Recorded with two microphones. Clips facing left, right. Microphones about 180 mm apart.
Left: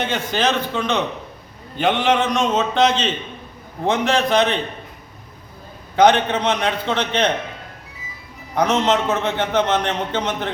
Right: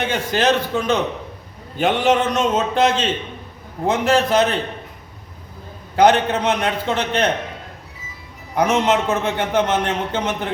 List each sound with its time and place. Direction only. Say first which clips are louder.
0.0 s a man's voice: right 2 dB; 10° right (ahead or behind)
6.0 s a man's voice: even; 5° right (ahead or behind)
8.5 s a man's voice: right 1 dB; 10° right (ahead or behind)